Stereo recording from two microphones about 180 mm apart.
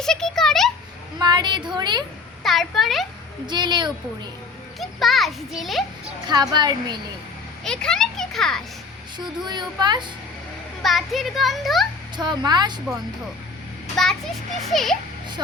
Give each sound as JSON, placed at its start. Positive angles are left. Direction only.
{"t": 0.0, "sound": "a sound", "side_deg": 5}
{"t": 1.2, "sound": "speech", "side_deg": -25}
{"t": 2.4, "sound": "a child's voice", "side_deg": 0}
{"t": 3.4, "sound": "speech", "side_deg": -25}
{"t": 4.8, "sound": "a child's voice", "side_deg": 0}
{"t": 6.2, "sound": "speech", "side_deg": -25}
{"t": 7.6, "sound": "a child's voice", "side_deg": 5}
{"t": 9.1, "sound": "speech", "side_deg": -25}
{"t": 10.8, "sound": "a child's voice", "side_deg": 0}
{"t": 12.1, "sound": "speech", "side_deg": -25}
{"t": 13.9, "sound": "a child's voice", "side_deg": 0}